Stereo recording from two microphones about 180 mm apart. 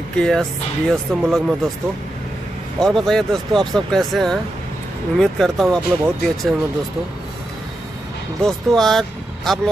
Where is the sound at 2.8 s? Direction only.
Centre (ahead or behind).